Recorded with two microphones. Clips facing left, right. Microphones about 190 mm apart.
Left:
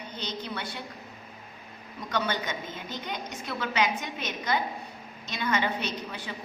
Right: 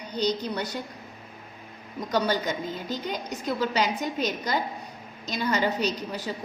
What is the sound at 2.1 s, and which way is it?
A woman's voice, 35° right (ahead or behind).